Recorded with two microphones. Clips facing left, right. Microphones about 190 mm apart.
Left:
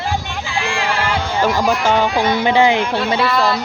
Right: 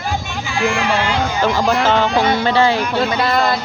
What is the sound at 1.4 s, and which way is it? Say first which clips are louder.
Speech: even; 10° left (ahead or behind).